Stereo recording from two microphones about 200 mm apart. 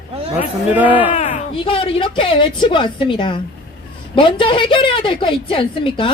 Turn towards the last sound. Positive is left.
turn(degrees=25)  # may be behind; listen again after turning